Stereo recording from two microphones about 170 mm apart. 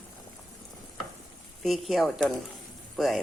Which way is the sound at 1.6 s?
Centre (ahead or behind).